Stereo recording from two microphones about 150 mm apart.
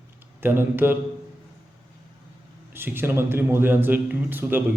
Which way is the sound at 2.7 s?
15° right (ahead or behind).